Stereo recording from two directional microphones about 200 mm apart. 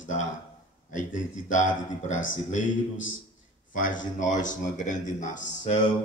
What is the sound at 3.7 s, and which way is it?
Speech, 40° left (ahead or behind).